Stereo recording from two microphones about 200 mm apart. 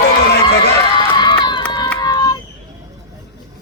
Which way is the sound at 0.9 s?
20° left (ahead or behind).